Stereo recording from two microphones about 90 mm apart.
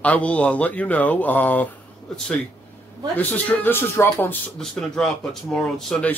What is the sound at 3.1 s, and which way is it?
Speech, 20° left (ahead or behind).